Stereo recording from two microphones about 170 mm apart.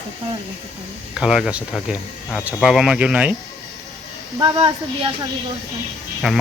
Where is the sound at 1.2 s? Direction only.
5° right (ahead or behind).